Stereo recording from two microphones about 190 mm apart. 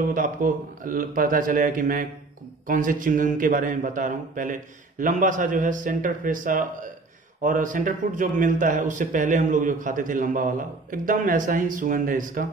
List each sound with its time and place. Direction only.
0.1 s speech: 45° right (ahead or behind)